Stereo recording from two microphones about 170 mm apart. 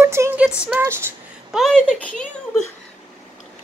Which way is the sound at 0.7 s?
15° right (ahead or behind).